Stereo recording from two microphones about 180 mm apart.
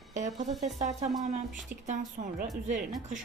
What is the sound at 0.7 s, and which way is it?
Speech, 40° right (ahead or behind).